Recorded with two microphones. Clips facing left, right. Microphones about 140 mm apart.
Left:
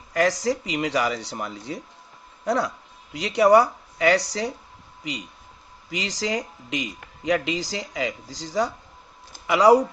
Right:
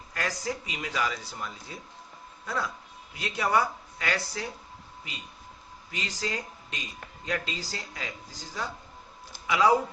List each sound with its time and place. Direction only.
0.1 s speech: 80° left
5.9 s speech: 90° left
9.5 s speech: 75° left (ahead or behind)